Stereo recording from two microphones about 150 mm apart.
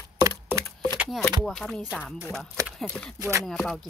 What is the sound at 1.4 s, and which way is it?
Speech, centre (ahead or behind).